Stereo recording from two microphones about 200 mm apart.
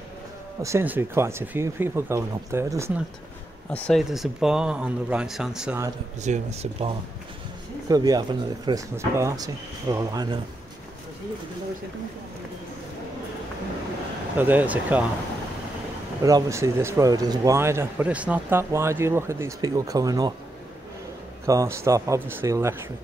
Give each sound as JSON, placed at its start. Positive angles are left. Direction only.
{"t": 0.6, "sound": "speech", "side_deg": -15}
{"t": 3.7, "sound": "speech", "side_deg": 5}
{"t": 6.2, "sound": "speech", "side_deg": -35}
{"t": 7.9, "sound": "speech", "side_deg": -20}
{"t": 14.3, "sound": "speech", "side_deg": -10}
{"t": 16.2, "sound": "speech", "side_deg": -15}
{"t": 21.5, "sound": "speech", "side_deg": -15}